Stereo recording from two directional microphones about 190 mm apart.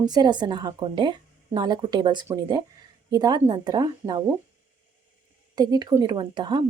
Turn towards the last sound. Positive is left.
turn(degrees=-25)  # may be behind; listen again after turning